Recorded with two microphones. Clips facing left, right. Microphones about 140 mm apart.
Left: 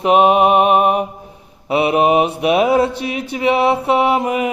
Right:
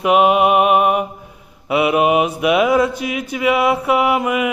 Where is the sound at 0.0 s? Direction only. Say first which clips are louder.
Left 1 dB; 35° left (ahead or behind).